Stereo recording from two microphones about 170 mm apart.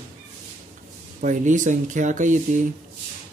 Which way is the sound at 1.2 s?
50° right (ahead or behind).